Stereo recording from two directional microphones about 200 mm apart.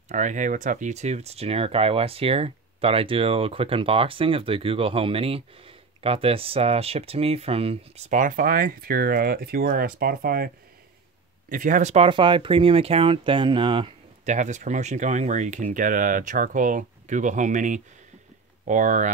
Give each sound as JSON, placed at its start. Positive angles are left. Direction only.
{"t": 0.1, "sound": "speech", "side_deg": -40}
{"t": 14.3, "sound": "speech", "side_deg": -35}